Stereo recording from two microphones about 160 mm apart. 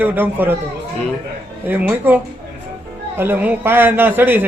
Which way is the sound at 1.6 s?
10° right (ahead or behind).